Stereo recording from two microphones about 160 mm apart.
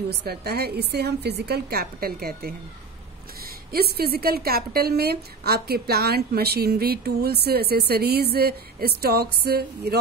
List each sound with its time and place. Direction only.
0.1 s a woman's voice: 90° right